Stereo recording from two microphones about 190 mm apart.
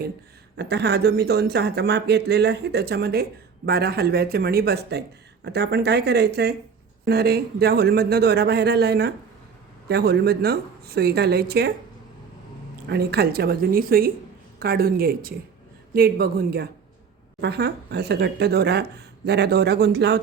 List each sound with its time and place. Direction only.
0.5 s speech: 65° right (ahead or behind)
12.9 s a woman's voice: 55° right (ahead or behind)